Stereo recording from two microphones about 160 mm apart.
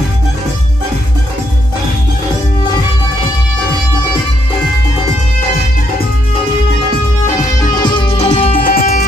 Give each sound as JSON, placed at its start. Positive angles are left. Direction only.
{"t": 7.7, "sound": "music", "side_deg": 25}
{"t": 8.5, "sound": "music", "side_deg": 65}